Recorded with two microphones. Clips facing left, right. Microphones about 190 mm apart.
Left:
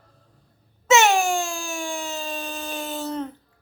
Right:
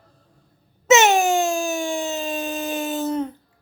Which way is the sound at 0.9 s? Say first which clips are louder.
Right 3 dB; 20° right (ahead or behind).